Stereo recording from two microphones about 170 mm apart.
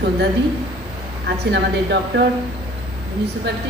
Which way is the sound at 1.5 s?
80° right.